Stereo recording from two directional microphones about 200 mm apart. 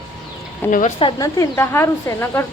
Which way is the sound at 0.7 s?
40° left (ahead or behind).